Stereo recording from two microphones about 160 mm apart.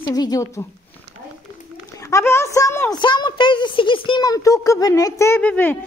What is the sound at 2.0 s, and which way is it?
A woman's voice, 20° left (ahead or behind).